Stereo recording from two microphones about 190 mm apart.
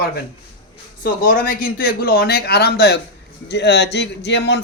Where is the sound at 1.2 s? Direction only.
45° left (ahead or behind).